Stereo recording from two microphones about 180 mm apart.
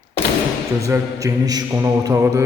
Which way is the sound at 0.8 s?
20° right (ahead or behind).